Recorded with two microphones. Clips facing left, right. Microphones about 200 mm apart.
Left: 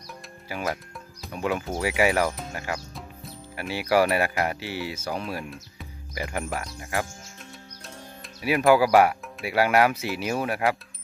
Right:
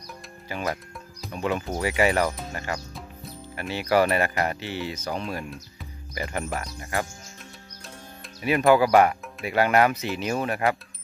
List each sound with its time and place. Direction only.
0.5 s speech: 5° left (ahead or behind)
8.4 s speech: 5° left (ahead or behind)